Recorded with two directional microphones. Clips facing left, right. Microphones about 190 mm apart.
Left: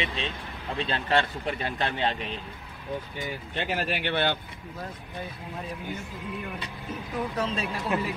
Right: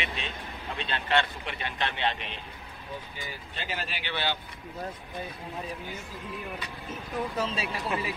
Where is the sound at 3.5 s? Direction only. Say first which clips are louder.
Left 7 dB; 60° left (ahead or behind).